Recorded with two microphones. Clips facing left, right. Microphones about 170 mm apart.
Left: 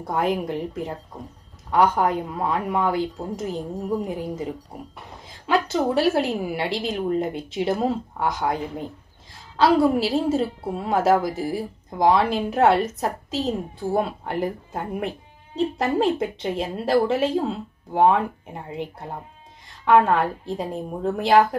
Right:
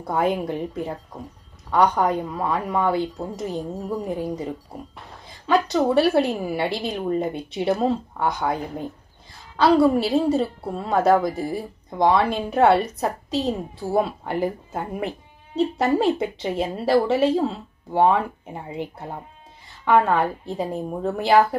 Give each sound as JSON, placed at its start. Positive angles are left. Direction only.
{"t": 0.0, "sound": "a woman's voice", "side_deg": 0}
{"t": 4.9, "sound": "a woman's voice", "side_deg": 0}